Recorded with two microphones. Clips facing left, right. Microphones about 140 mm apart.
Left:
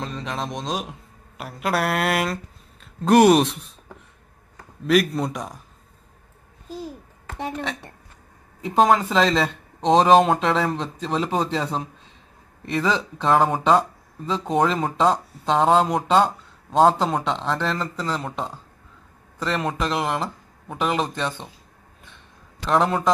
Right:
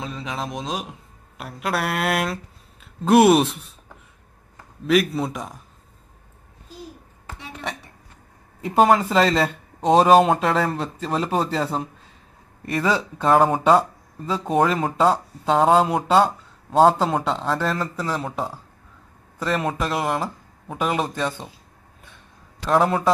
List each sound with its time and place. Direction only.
0.0 s speech: 5° right (ahead or behind)
4.8 s speech: centre (ahead or behind)
7.3 s a woman's voice: 50° left (ahead or behind)
8.6 s speech: 5° right (ahead or behind)
22.7 s speech: 5° right (ahead or behind)